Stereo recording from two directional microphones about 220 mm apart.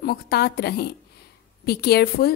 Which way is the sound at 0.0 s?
45° left (ahead or behind).